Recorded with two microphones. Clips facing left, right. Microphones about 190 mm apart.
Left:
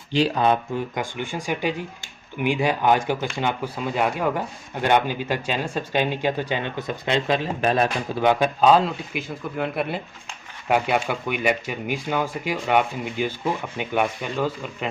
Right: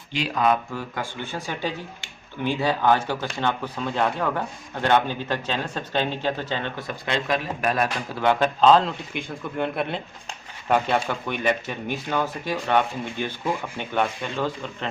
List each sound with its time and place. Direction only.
0.1 s speech: 30° left (ahead or behind); by 14.8 s 10° left (ahead or behind)